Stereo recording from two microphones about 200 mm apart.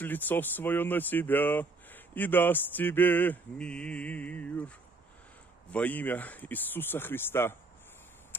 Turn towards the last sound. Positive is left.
turn(degrees=10)  # may be behind; listen again after turning